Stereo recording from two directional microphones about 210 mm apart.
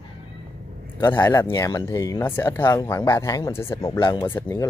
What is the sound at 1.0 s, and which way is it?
Speech, 15° left (ahead or behind).